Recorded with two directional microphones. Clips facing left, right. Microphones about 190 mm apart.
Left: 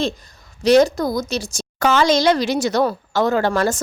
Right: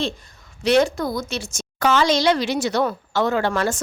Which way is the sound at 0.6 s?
40° left (ahead or behind).